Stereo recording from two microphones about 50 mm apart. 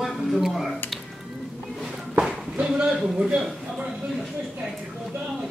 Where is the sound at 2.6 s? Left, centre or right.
Right.